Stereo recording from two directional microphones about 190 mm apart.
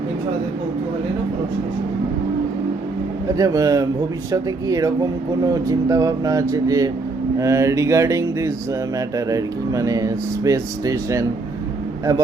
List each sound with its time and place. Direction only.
3.3 s a man's voice: 20° right (ahead or behind)